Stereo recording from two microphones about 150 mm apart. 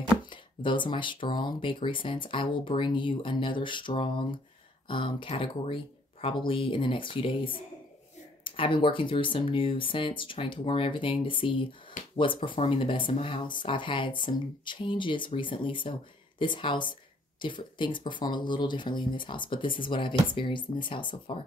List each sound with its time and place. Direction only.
0.3 s speech: 30° left (ahead or behind)